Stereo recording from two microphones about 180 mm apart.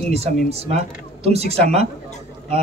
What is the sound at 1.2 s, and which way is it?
Speech, 35° right (ahead or behind).